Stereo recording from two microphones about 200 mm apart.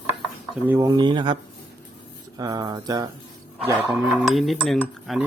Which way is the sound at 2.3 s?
20° right (ahead or behind).